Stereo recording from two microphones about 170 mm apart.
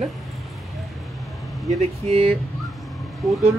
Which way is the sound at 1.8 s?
35° right (ahead or behind).